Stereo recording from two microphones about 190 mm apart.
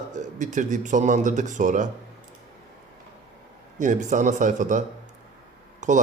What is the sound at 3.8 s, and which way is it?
A man's voice, 40° right (ahead or behind).